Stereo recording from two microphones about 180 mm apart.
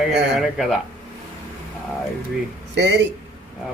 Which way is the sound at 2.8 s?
70° right (ahead or behind).